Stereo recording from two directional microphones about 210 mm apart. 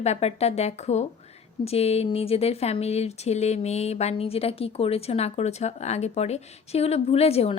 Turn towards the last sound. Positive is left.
turn(degrees=30)  # may be behind; listen again after turning